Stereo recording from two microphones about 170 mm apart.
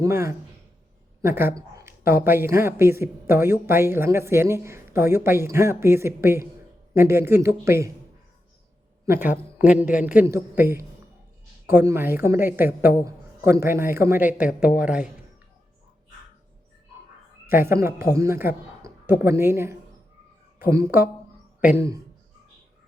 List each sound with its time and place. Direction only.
0.0 s a woman's voice: 15° right (ahead or behind)
1.2 s a sound: 15° right (ahead or behind)
2.2 s a woman's voice: 15° right (ahead or behind)
9.0 s a woman's voice: 15° right (ahead or behind)
17.5 s a woman's voice: 15° right (ahead or behind)